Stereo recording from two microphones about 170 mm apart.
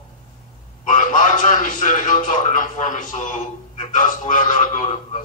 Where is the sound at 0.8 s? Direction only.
50° left (ahead or behind).